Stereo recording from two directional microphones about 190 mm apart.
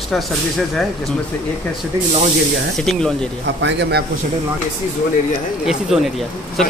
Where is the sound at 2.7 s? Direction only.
5° left (ahead or behind).